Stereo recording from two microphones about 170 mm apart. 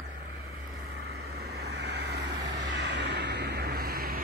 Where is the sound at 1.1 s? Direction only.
70° right (ahead or behind).